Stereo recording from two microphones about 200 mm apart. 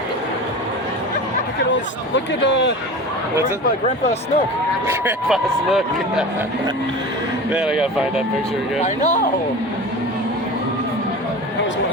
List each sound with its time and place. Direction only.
2.1 s speech: 60° left (ahead or behind)
4.9 s speech: 5° right (ahead or behind)
7.5 s speech: 5° right (ahead or behind)
8.8 s speech: 35° left (ahead or behind)